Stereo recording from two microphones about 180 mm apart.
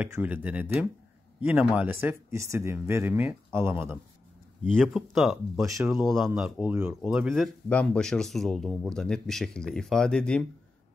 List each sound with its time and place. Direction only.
0.0 s speech: 10° right (ahead or behind)
4.6 s speech: centre (ahead or behind)